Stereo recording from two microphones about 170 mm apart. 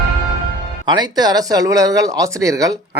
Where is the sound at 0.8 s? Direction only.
25° right (ahead or behind).